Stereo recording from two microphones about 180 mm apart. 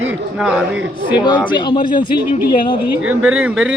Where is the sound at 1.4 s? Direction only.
25° left (ahead or behind).